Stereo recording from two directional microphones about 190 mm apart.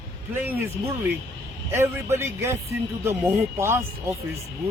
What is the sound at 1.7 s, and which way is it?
Speech, 15° right (ahead or behind).